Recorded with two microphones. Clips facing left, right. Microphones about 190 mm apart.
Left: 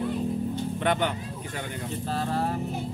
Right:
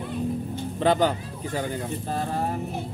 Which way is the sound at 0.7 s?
35° right (ahead or behind).